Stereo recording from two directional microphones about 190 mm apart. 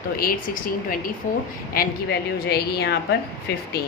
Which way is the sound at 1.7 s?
55° left (ahead or behind).